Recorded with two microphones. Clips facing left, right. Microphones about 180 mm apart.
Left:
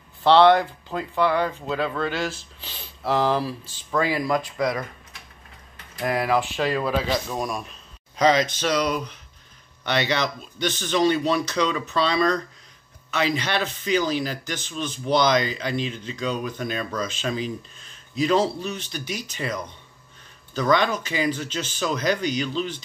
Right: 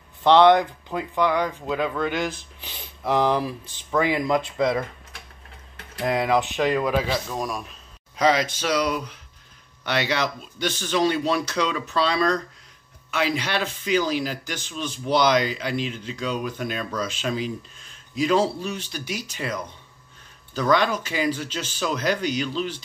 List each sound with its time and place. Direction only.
0.2 s speech: 15° right (ahead or behind)
6.0 s speech: 20° right (ahead or behind)
7.2 s a man's voice: centre (ahead or behind)